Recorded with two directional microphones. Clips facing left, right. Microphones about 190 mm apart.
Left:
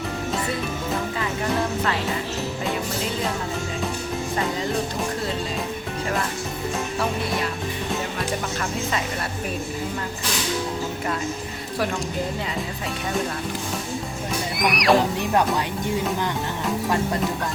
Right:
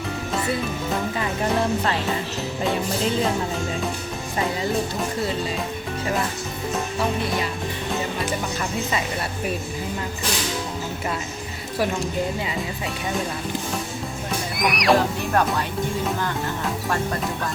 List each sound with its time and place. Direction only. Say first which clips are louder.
14.6 s speech: even; centre (ahead or behind)
14.9 s speech: left 1 dB; 15° left (ahead or behind)